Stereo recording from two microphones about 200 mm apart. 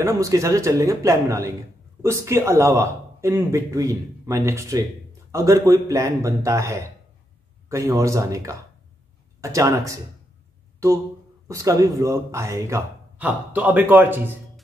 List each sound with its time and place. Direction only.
0.0 s speech: 15° right (ahead or behind)
11.4 s speech: 15° right (ahead or behind)